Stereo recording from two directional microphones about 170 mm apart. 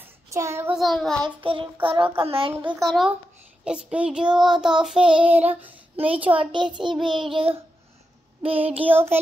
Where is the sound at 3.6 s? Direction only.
5° right (ahead or behind).